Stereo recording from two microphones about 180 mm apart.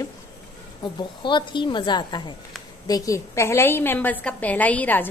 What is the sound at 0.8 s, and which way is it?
A woman's voice, 25° left (ahead or behind).